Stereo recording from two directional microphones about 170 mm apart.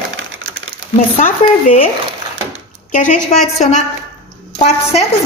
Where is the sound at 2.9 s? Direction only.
50° left (ahead or behind).